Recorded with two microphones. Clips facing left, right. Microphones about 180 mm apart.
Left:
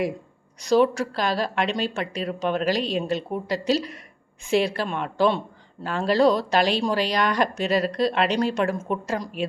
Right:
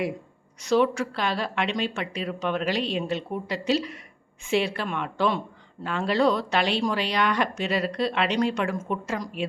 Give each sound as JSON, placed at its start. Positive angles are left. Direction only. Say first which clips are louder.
{"t": 0.6, "sound": "speech", "louder": "left 3 dB", "side_deg": 35}